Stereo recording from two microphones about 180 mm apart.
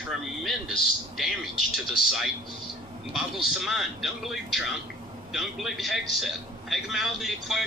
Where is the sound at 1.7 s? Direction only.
Centre (ahead or behind).